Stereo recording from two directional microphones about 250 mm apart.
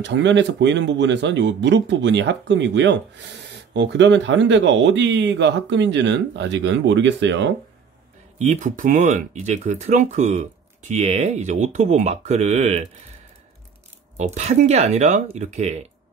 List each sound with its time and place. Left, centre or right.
0.0 s speech: right
8.4 s speech: right
14.1 s speech: right